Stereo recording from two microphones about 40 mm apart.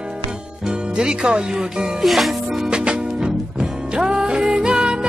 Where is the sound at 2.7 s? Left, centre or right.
Right.